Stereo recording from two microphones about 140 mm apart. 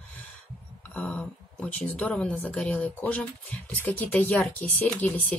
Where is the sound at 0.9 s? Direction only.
5° left (ahead or behind).